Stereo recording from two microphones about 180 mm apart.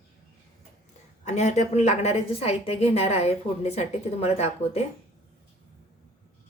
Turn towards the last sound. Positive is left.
turn(degrees=35)  # may be behind; listen again after turning